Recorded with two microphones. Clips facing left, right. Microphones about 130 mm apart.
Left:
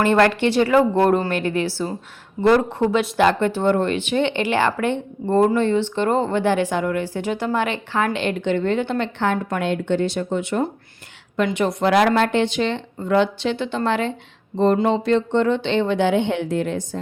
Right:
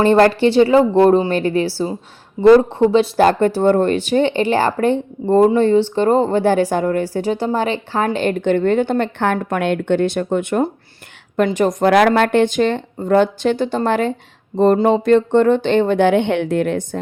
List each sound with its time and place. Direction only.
0.0 s a woman's voice: 35° right (ahead or behind)
2.9 s a woman's voice: 35° right (ahead or behind); by 10.6 s 50° right (ahead or behind)
11.4 s a woman's voice: 40° right (ahead or behind); by 17.0 s 60° right (ahead or behind)